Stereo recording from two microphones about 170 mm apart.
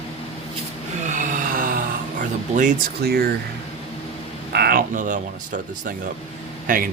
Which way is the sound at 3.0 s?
70° right (ahead or behind).